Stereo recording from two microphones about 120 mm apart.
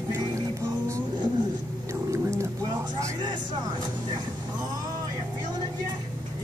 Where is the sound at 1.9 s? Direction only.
25° right (ahead or behind).